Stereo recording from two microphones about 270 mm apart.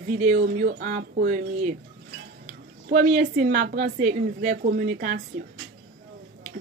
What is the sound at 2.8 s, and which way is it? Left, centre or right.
A woman's voice, right.